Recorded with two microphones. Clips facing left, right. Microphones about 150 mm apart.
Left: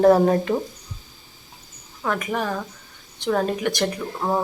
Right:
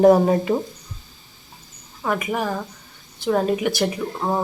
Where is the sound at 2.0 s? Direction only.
10° right (ahead or behind).